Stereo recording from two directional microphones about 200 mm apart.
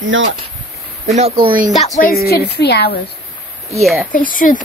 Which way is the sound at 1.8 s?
35° left (ahead or behind).